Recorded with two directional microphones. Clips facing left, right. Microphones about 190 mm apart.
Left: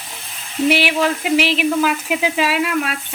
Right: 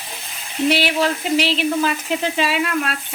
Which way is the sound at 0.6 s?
10° left (ahead or behind).